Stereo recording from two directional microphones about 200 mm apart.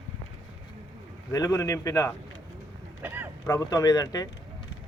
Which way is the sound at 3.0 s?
10° right (ahead or behind).